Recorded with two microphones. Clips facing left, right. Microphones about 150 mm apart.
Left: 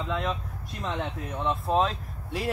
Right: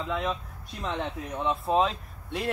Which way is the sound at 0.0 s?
Centre (ahead or behind).